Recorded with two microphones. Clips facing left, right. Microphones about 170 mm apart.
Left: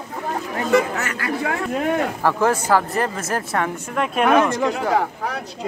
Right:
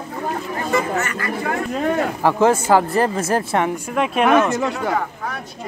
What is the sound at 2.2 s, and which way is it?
Speech, 25° right (ahead or behind).